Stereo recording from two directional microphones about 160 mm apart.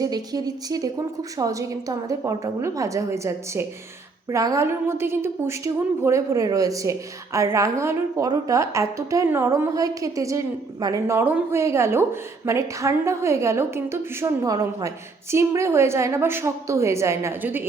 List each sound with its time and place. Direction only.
0.0 s a woman's voice: 25° right (ahead or behind)